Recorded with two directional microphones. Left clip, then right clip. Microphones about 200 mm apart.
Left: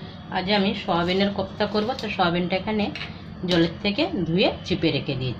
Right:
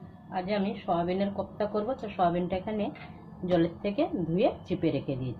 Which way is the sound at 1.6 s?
30° right (ahead or behind).